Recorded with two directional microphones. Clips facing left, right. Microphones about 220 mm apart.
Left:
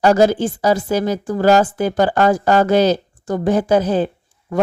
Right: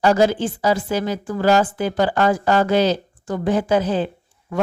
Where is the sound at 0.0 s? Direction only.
40° left (ahead or behind).